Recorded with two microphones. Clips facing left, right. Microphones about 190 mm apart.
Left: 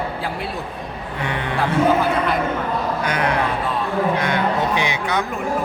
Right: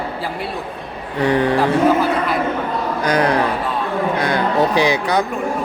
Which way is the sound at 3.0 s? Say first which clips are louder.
Right 8 dB; 35° right (ahead or behind).